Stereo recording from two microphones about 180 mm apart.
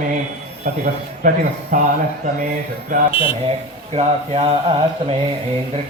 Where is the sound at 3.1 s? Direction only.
30° left (ahead or behind).